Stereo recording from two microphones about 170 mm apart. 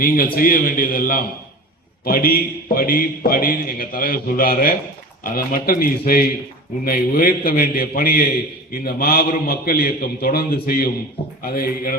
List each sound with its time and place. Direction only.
0.0 s a man's voice: 60° left (ahead or behind)
11.2 s a man's voice: 30° left (ahead or behind)
11.5 s a man's voice: 60° left (ahead or behind)